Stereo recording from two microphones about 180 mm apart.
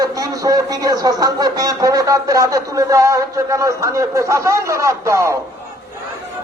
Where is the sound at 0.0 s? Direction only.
20° right (ahead or behind).